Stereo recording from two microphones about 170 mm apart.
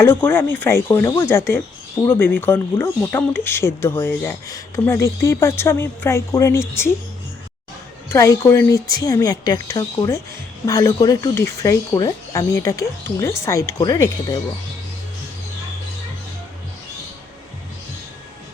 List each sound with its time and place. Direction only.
0.0 s speech: 15° left (ahead or behind)
8.1 s speech: 15° left (ahead or behind)